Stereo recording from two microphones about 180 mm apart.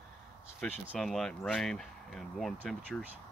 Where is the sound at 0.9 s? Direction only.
Centre (ahead or behind).